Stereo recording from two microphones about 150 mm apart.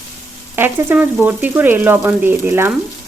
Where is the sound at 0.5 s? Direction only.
15° right (ahead or behind).